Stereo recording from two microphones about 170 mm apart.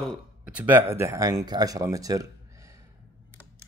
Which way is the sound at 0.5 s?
10° right (ahead or behind).